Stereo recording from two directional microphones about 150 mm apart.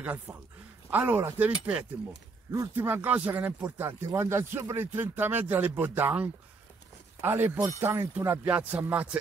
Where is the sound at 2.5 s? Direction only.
20° right (ahead or behind).